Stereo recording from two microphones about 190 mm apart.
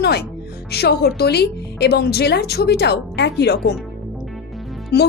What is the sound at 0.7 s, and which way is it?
Speech, 60° left (ahead or behind).